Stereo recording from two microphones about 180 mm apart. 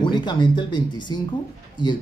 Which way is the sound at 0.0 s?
25° left (ahead or behind).